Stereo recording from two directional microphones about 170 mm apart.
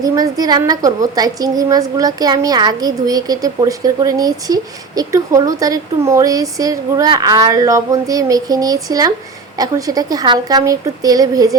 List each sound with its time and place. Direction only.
0.0 s a woman's voice: 20° right (ahead or behind)